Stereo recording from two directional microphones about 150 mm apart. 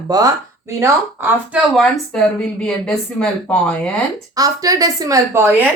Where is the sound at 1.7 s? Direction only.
5° left (ahead or behind).